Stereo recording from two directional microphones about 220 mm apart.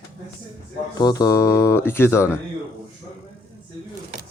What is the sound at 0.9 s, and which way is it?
Speech, 15° left (ahead or behind).